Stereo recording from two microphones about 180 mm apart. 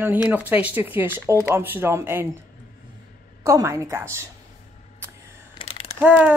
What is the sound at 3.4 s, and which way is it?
Speech, 15° right (ahead or behind).